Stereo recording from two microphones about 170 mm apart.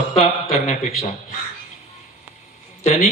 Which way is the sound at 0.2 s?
45° left (ahead or behind).